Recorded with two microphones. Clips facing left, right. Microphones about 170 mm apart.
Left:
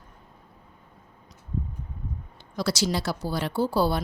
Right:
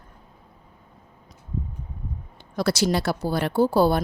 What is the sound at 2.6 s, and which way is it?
Speech, 55° right (ahead or behind).